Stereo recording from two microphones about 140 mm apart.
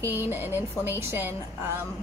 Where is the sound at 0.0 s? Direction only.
15° right (ahead or behind).